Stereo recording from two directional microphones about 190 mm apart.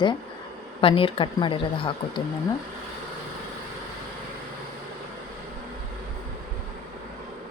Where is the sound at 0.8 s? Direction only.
30° left (ahead or behind).